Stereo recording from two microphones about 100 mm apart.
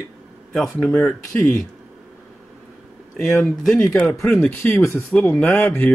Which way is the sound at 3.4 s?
5° left (ahead or behind).